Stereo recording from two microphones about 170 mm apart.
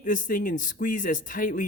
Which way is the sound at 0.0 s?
50° left (ahead or behind).